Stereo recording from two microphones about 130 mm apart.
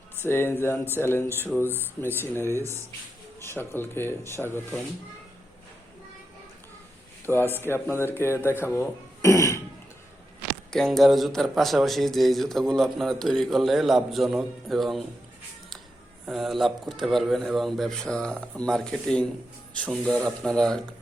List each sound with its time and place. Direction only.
0.2 s speech: 20° left (ahead or behind)
7.3 s speech: 15° left (ahead or behind)
10.7 s a man's voice: 5° left (ahead or behind)
16.2 s a man's voice: centre (ahead or behind)